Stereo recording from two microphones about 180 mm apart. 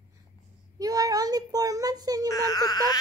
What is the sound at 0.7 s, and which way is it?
Child singing, 20° right (ahead or behind).